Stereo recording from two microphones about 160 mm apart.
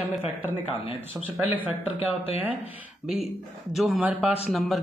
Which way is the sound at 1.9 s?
35° left (ahead or behind).